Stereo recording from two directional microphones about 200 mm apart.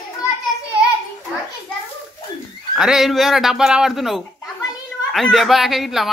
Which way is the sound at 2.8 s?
Centre (ahead or behind).